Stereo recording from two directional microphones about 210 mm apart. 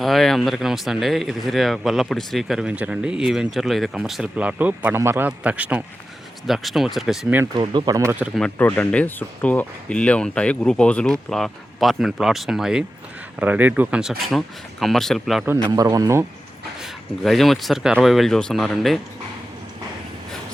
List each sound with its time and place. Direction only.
0.0 s speech: centre (ahead or behind)
7.5 s speech: 20° right (ahead or behind)
8.4 s speech: 5° left (ahead or behind)
15.4 s speech: 15° right (ahead or behind)
16.8 s speech: centre (ahead or behind)